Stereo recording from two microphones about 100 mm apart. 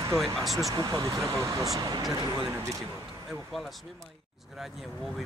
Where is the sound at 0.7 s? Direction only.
40° right (ahead or behind).